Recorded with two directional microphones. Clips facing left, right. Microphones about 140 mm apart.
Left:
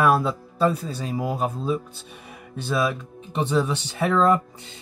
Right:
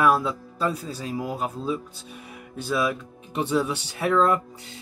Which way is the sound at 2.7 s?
30° left (ahead or behind).